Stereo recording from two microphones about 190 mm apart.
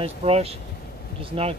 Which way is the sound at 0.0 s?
30° right (ahead or behind).